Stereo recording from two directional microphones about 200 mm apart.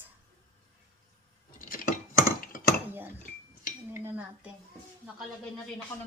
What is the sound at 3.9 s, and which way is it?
Dishes, 10° right (ahead or behind).